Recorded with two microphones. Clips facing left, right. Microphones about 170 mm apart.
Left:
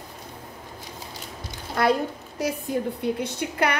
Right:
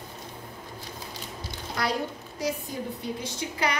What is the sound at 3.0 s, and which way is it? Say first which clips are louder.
Speech: left 6 dB; 60° left (ahead or behind).